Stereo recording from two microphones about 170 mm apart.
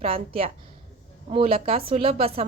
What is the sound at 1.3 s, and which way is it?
A woman's voice, 35° right (ahead or behind).